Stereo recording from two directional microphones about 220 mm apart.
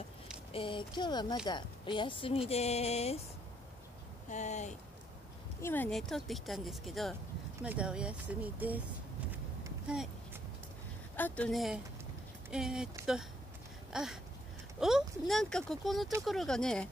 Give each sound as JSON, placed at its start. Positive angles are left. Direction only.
{"t": 0.5, "sound": "a woman's voice", "side_deg": 25}
{"t": 4.3, "sound": "speech", "side_deg": 30}
{"t": 5.6, "sound": "speech", "side_deg": 10}
{"t": 9.8, "sound": "a sound", "side_deg": -5}
{"t": 11.1, "sound": "speech", "side_deg": 5}